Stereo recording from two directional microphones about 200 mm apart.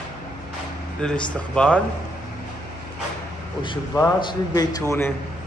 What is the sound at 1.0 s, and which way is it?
Speech, 5° left (ahead or behind).